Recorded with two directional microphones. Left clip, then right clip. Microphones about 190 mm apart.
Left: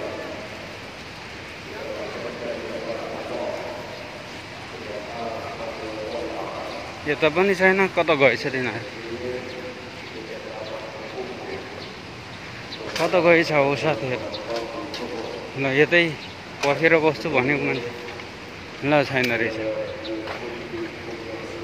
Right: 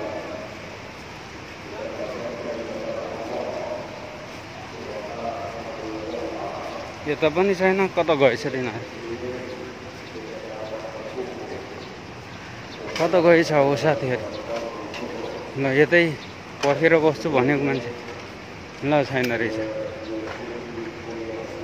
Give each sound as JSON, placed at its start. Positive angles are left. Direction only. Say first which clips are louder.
{"t": 7.1, "sound": "speech", "louder": "left 1 dB", "side_deg": -5}
{"t": 13.0, "sound": "speech", "louder": "right 1 dB", "side_deg": -20}
{"t": 15.6, "sound": "speech", "louder": "even", "side_deg": -20}
{"t": 18.9, "sound": "speech", "louder": "left 1 dB", "side_deg": -5}